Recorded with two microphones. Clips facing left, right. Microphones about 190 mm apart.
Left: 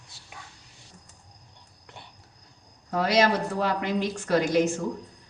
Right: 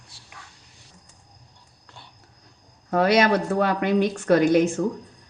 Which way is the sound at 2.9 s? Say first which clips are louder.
Right 4 dB; 60° right (ahead or behind).